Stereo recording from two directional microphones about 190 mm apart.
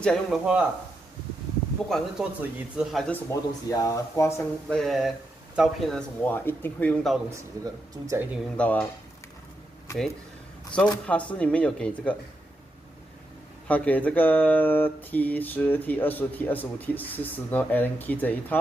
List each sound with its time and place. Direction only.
0.0 s speech: centre (ahead or behind)
1.9 s speech: centre (ahead or behind)
4.6 s speech: 5° left (ahead or behind)
7.2 s speech: 15° right (ahead or behind)
8.5 s speech: 5° left (ahead or behind)
10.7 s speech: 5° left (ahead or behind)
13.7 s speech: 10° left (ahead or behind)